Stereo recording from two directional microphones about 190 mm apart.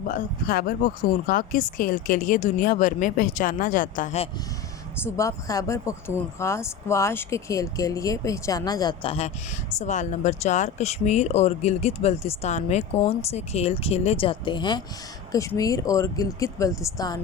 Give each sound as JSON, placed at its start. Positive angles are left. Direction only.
{"t": 0.1, "sound": "speech", "side_deg": 50}
{"t": 5.0, "sound": "speech", "side_deg": 15}